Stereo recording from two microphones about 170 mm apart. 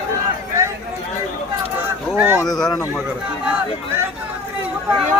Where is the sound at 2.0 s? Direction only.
10° right (ahead or behind).